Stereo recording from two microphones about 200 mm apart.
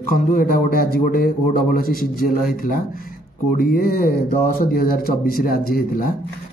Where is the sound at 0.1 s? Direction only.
45° left (ahead or behind).